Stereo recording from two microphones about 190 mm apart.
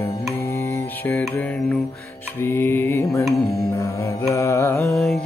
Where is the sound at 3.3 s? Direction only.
Centre (ahead or behind).